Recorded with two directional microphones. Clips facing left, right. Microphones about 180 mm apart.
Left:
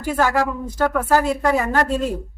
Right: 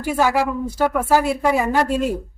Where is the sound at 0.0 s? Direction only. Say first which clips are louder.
Right 1 dB; 10° right (ahead or behind).